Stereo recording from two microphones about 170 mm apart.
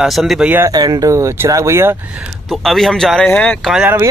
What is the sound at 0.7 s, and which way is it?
Speech, 20° right (ahead or behind).